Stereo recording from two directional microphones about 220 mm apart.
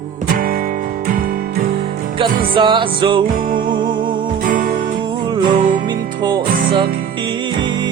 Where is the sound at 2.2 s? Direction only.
20° right (ahead or behind).